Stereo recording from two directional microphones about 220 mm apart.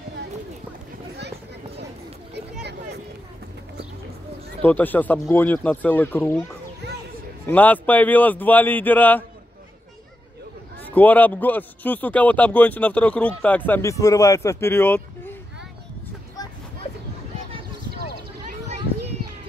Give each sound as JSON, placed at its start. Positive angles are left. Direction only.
{"t": 4.6, "sound": "a man's voice", "side_deg": 10}
{"t": 6.8, "sound": "a sound", "side_deg": -50}
{"t": 7.4, "sound": "a man's voice", "side_deg": 10}
{"t": 10.8, "sound": "a man's voice", "side_deg": 5}